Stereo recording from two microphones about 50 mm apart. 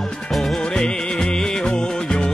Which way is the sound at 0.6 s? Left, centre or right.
Centre.